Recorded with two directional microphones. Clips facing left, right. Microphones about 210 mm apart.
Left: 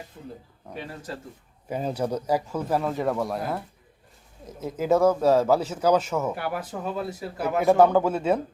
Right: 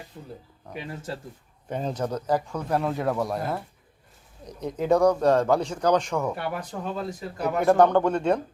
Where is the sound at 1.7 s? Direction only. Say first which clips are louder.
Left 1 dB; 10° left (ahead or behind).